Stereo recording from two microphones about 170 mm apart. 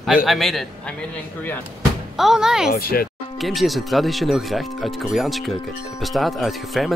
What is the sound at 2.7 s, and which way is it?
Speech, 60° left (ahead or behind).